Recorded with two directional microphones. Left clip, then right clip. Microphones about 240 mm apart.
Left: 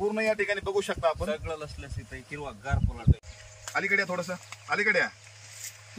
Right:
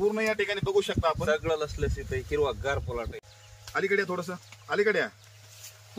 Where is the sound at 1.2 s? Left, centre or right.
Centre.